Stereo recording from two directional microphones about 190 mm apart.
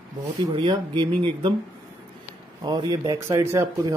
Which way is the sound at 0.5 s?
25° right (ahead or behind).